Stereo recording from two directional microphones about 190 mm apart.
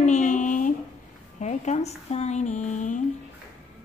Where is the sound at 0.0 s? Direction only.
40° left (ahead or behind).